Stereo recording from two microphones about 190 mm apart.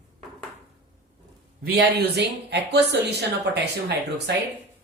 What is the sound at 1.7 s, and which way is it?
Speech, 60° right (ahead or behind).